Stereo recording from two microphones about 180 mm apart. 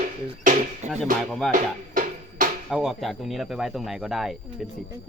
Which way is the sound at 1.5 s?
50° right (ahead or behind).